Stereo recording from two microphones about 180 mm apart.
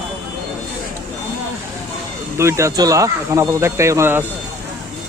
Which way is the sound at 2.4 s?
15° right (ahead or behind).